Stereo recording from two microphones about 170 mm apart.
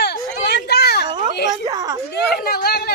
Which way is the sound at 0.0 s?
85° left.